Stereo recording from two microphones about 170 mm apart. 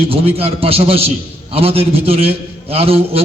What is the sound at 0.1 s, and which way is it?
A man's voice, 35° right (ahead or behind).